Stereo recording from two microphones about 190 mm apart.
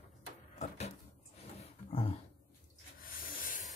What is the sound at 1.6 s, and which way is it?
Roaring cats, 30° left (ahead or behind).